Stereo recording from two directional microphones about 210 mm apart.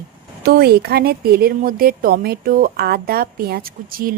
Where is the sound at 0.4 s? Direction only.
45° right (ahead or behind).